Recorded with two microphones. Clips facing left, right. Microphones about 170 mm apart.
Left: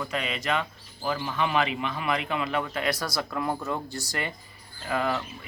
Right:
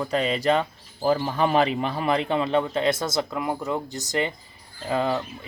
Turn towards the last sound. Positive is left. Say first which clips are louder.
# right 3 dB
turn(degrees=-25)  # may be behind; listen again after turning